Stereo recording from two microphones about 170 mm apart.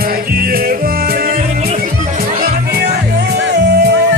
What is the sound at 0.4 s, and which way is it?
Music, 60° right (ahead or behind).